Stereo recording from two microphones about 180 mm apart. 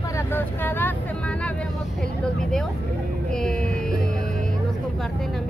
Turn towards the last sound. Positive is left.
turn(degrees=5)  # may be behind; listen again after turning